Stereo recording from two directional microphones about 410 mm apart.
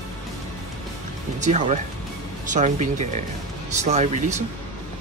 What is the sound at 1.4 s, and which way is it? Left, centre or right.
Speech, centre.